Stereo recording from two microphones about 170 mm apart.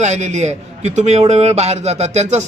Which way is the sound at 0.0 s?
45° right (ahead or behind).